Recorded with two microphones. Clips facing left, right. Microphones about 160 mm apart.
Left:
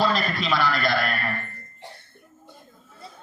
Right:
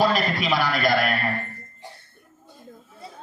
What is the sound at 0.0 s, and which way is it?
A man's voice, 15° right (ahead or behind).